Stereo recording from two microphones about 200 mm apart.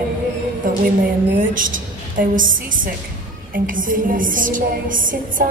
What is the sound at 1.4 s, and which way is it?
A woman's voice, 40° right (ahead or behind).